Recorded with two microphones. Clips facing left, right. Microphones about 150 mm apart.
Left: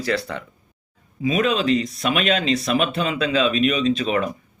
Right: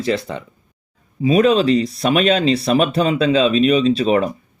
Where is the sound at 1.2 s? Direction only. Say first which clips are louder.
Right 7 dB; 35° right (ahead or behind).